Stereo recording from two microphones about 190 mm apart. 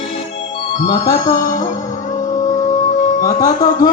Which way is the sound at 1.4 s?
45° left (ahead or behind).